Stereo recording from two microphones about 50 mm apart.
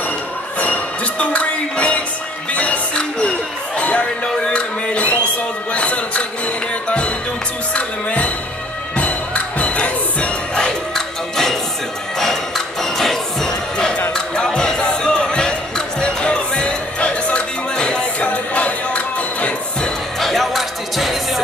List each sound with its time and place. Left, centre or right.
0.6 s music: left
4.6 s a sound: left
7.7 s music: left
12.2 s music: centre
18.2 s a sound: left
20.2 s music: centre